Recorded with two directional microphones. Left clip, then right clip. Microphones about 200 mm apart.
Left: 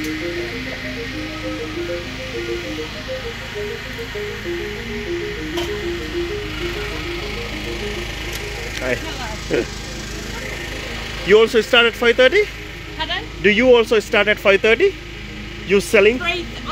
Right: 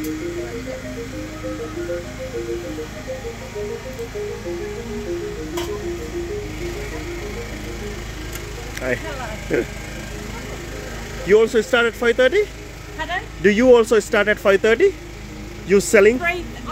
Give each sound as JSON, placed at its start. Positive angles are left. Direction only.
{"t": 9.5, "sound": "speech", "side_deg": -10}
{"t": 11.2, "sound": "speech", "side_deg": -10}
{"t": 13.4, "sound": "speech", "side_deg": -35}
{"t": 14.1, "sound": "speech", "side_deg": -20}